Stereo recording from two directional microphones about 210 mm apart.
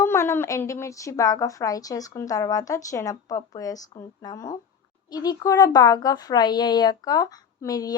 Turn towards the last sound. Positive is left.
turn(degrees=15)  # may be behind; listen again after turning